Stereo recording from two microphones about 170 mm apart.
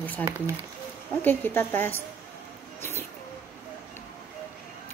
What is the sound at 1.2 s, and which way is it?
Speech, 10° left (ahead or behind).